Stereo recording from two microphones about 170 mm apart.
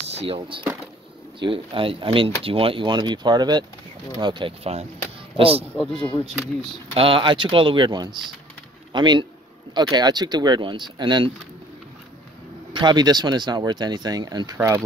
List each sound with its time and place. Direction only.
0.1 s speech: 35° right (ahead or behind)
5.8 s speech: 10° left (ahead or behind)
6.9 s speech: 30° right (ahead or behind)
12.7 s speech: 25° right (ahead or behind)